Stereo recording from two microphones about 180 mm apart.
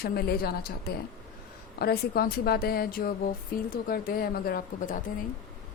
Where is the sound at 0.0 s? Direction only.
60° left (ahead or behind).